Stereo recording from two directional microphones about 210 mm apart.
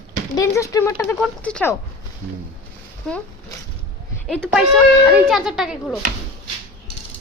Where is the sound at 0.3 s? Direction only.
15° left (ahead or behind).